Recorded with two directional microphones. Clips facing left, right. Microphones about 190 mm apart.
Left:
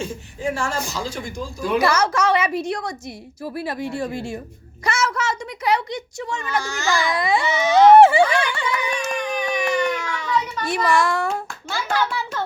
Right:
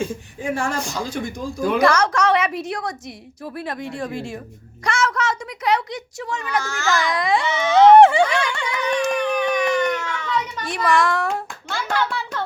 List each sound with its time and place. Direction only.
0.5 s a man's voice: 55° right (ahead or behind)
1.8 s a woman's voice: 5° left (ahead or behind)
4.9 s a sound: centre (ahead or behind)
6.6 s a child's voice: 15° left (ahead or behind)
7.0 s a sound: 5° left (ahead or behind)
11.7 s hands: 5° left (ahead or behind)